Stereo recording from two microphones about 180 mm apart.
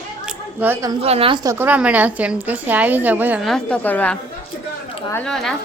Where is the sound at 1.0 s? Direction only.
35° right (ahead or behind); by 3.4 s 10° right (ahead or behind).